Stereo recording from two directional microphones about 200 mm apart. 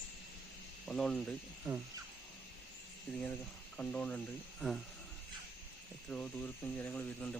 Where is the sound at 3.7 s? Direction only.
5° left (ahead or behind).